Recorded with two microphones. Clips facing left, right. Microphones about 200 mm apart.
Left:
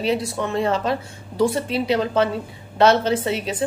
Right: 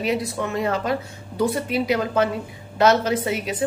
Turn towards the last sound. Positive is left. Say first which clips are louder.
# left 1 dB
turn(degrees=30)  # may be behind; listen again after turning